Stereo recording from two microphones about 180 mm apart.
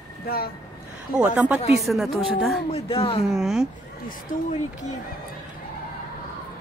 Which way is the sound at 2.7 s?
30° left (ahead or behind).